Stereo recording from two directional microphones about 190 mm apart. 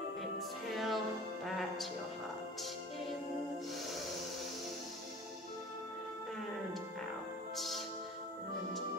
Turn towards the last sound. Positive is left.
turn(degrees=0)  # may be behind; listen again after turning